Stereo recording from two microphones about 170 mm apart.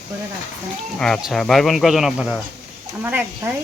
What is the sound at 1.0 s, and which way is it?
Speech, centre (ahead or behind).